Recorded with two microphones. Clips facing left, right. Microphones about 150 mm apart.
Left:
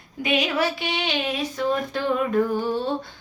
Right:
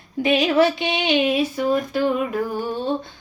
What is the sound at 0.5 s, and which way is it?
Female singing, 20° right (ahead or behind).